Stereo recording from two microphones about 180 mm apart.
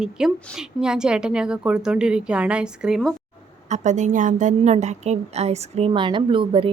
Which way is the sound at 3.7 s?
40° right (ahead or behind).